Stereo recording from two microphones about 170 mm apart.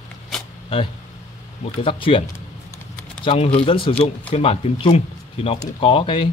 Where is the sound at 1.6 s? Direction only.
30° left (ahead or behind).